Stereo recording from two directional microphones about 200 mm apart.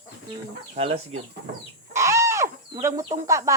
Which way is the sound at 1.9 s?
15° right (ahead or behind).